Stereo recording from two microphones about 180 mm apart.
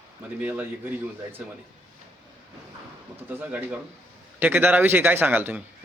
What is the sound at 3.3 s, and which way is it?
A man's voice, 10° right (ahead or behind).